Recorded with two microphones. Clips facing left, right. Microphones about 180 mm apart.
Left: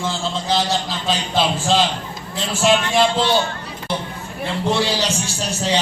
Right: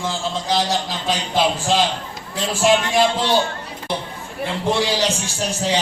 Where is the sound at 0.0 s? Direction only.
15° right (ahead or behind).